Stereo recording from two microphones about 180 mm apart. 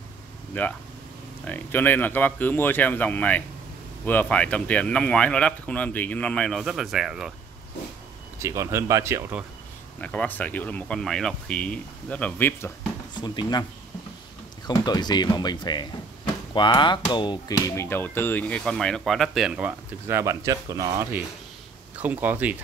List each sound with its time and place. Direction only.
0.5 s speech: 10° left (ahead or behind)
8.4 s speech: 15° right (ahead or behind)
9.9 s speech: 5° left (ahead or behind)
13.1 s speech: 25° left (ahead or behind)
14.7 s speech: 25° left (ahead or behind)
17.6 s speech: 15° left (ahead or behind); by 22.6 s 10° right (ahead or behind)